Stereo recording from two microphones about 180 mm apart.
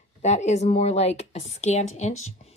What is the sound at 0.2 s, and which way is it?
Speech, 40° left (ahead or behind).